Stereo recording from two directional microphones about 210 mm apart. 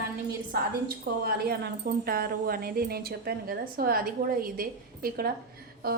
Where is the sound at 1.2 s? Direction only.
50° right (ahead or behind).